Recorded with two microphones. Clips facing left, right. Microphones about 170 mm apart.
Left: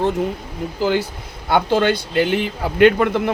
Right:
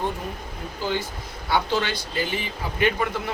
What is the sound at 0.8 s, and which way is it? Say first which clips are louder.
Speech: left 8 dB; 90° left.